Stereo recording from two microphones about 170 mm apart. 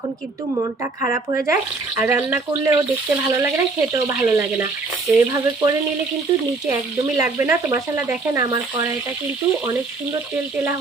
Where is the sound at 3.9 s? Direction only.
15° right (ahead or behind).